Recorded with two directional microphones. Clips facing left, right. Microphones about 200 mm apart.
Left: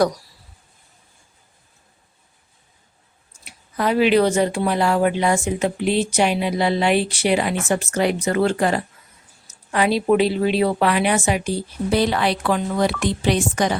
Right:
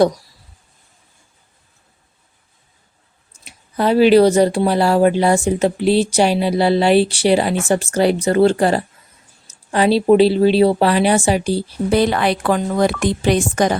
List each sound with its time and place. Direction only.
3.4 s speech: 30° right (ahead or behind)
11.9 s speech: 50° right (ahead or behind)